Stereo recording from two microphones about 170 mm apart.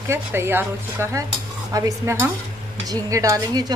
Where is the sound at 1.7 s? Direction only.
20° right (ahead or behind).